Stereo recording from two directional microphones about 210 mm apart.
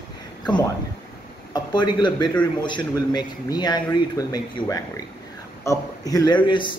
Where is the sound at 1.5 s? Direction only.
20° left (ahead or behind).